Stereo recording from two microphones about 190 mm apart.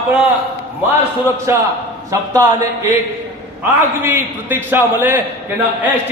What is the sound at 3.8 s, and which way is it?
A man's voice, 10° right (ahead or behind).